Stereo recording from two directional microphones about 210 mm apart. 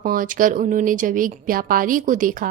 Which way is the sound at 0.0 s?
40° right (ahead or behind).